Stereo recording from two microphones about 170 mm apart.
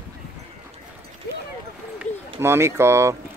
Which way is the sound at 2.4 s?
15° right (ahead or behind).